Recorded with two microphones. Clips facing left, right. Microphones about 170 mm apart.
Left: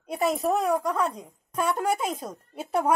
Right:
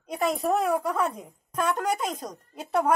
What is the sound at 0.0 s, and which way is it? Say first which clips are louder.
A man's voice: left 1 dB; 5° left (ahead or behind).